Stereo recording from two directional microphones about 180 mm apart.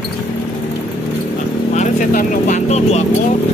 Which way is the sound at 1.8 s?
45° left (ahead or behind).